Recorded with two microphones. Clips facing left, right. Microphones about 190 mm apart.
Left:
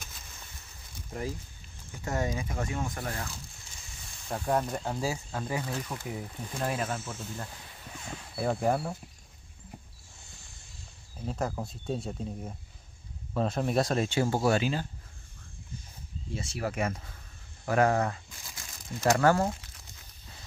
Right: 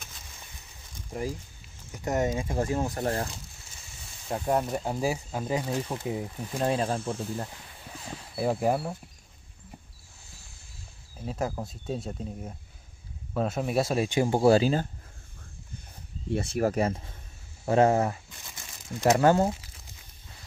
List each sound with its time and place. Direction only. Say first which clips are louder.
1.9 s speech: right 5 dB; 20° right (ahead or behind); by 3.3 s 35° right (ahead or behind)
4.3 s speech: right 2 dB; 10° right (ahead or behind); by 7.4 s 35° right (ahead or behind)
8.4 s speech: right 2 dB; 5° right (ahead or behind)
11.1 s speech: right 1 dB; 5° right (ahead or behind)
14.4 s speech: right 6 dB; 35° right (ahead or behind)
16.3 s speech: right 8 dB; 60° right (ahead or behind)
16.7 s speech: right 5 dB; 30° right (ahead or behind)
18.3 s crumpling: right 1 dB; centre (ahead or behind)
19.1 s speech: right 3 dB; 20° right (ahead or behind)